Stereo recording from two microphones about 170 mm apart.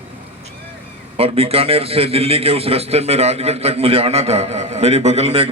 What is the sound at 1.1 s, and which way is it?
A man's voice, 35° right (ahead or behind).